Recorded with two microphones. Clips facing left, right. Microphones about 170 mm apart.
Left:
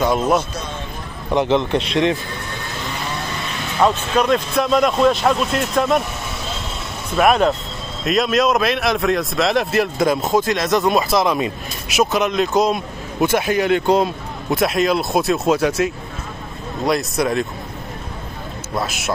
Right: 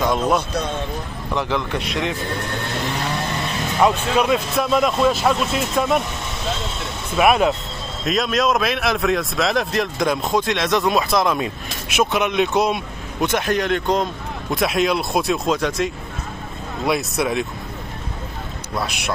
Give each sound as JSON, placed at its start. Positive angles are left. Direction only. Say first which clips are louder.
{"t": 0.0, "sound": "speech", "louder": "left 2 dB", "side_deg": 0}
{"t": 1.3, "sound": "speech", "louder": "left 6 dB", "side_deg": 20}
{"t": 3.8, "sound": "speech", "louder": "left 1 dB", "side_deg": -10}
{"t": 7.2, "sound": "speech", "louder": "left 1 dB", "side_deg": -5}
{"t": 18.8, "sound": "speech", "louder": "left 2 dB", "side_deg": 0}